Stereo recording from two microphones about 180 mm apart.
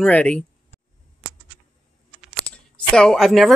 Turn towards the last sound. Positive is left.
turn(degrees=0)  # may be behind; listen again after turning